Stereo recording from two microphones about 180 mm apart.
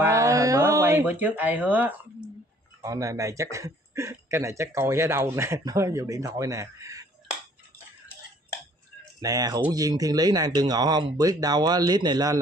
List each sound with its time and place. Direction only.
0.0 s a sound: 15° right (ahead or behind)
2.8 s speech: 20° right (ahead or behind)
9.2 s speech: 20° right (ahead or behind)